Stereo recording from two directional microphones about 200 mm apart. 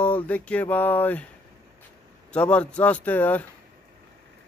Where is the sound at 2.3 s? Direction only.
5° left (ahead or behind).